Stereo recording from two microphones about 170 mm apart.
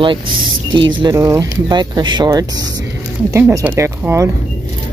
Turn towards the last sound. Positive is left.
turn(degrees=-15)  # may be behind; listen again after turning